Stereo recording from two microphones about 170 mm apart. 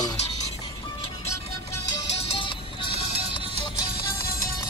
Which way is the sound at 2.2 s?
30° left (ahead or behind).